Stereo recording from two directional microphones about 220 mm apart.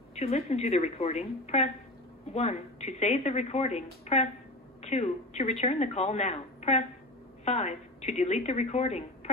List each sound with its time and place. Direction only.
0.1 s a woman's voice: 30° left (ahead or behind)